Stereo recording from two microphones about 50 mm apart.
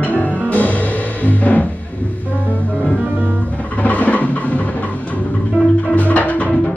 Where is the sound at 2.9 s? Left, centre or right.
Right.